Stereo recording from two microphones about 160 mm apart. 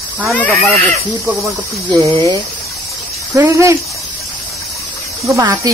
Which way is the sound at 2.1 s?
30° right (ahead or behind).